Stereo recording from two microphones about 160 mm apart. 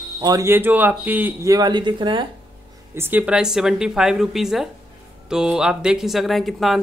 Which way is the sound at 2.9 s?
10° right (ahead or behind).